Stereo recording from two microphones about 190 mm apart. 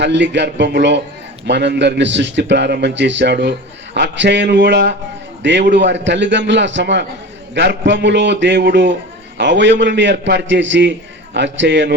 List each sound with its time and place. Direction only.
0.0 s a man's voice: 70° right (ahead or behind)